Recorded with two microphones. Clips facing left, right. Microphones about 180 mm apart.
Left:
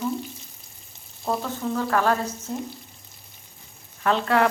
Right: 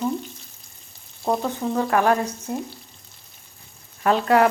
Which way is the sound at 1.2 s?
20° right (ahead or behind).